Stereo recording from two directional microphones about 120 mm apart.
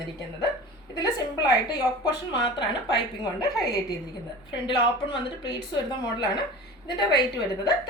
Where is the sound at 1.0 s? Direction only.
30° left (ahead or behind).